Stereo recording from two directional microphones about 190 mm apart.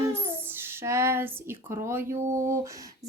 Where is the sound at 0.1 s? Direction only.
10° right (ahead or behind).